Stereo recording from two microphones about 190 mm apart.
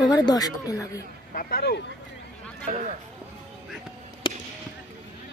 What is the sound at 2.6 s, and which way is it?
Speech, 35° right (ahead or behind).